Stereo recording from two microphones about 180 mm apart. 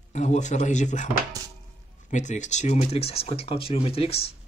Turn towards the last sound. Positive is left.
turn(degrees=35)  # may be behind; listen again after turning